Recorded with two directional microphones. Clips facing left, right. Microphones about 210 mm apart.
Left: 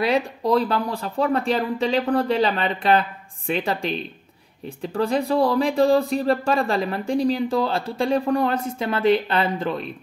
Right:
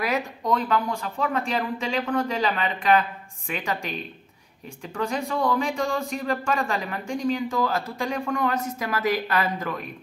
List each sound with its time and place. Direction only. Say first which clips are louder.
0.0 s speech: left 5 dB; 30° left (ahead or behind)